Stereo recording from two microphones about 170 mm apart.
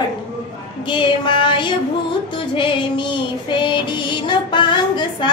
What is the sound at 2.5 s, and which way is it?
Female singing, 30° left (ahead or behind).